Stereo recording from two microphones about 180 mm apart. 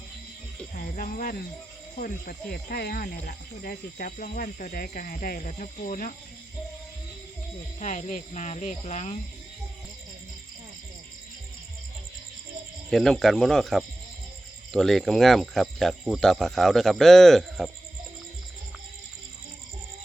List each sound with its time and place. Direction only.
0.7 s speech: 45° left (ahead or behind)
7.8 s speech: 40° left (ahead or behind)
12.9 s speech: centre (ahead or behind)